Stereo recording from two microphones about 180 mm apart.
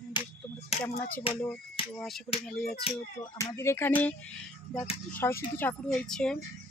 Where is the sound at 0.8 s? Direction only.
10° left (ahead or behind).